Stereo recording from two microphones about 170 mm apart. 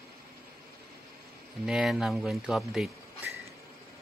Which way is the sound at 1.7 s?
5° right (ahead or behind).